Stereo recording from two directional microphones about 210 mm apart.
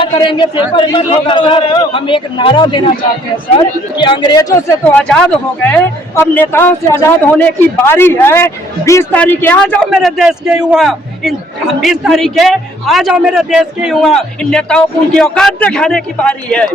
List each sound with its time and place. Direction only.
0.0 s a man's voice: 25° left (ahead or behind)
4.9 s a man's voice: 5° left (ahead or behind)